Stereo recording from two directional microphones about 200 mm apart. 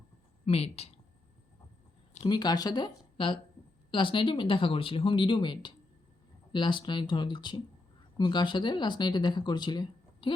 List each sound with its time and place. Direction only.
0.4 s speech: 30° left (ahead or behind)
2.2 s speech: 20° left (ahead or behind)